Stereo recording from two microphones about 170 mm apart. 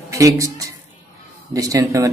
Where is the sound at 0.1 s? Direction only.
20° right (ahead or behind).